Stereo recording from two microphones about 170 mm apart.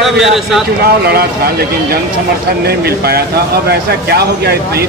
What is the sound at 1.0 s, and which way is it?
Speech, 65° right (ahead or behind).